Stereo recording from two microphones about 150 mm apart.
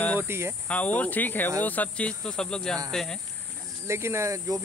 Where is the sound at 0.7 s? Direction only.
10° left (ahead or behind).